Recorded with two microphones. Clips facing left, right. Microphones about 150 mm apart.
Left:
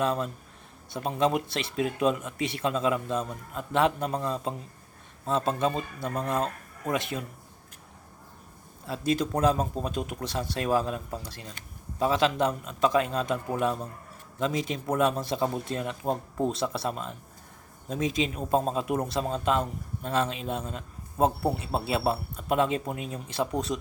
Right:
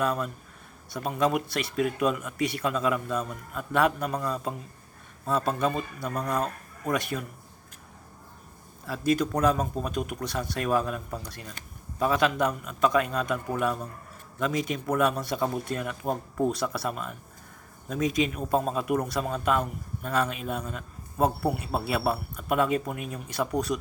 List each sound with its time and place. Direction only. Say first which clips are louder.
0.0 s speech: even; 25° left (ahead or behind)
8.9 s speech: right 2 dB; 25° left (ahead or behind)